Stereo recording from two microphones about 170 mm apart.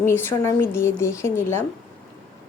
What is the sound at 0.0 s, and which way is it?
Speech, 15° left (ahead or behind).